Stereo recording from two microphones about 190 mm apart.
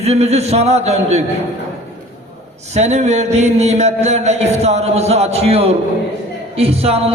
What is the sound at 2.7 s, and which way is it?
Speech, 35° right (ahead or behind).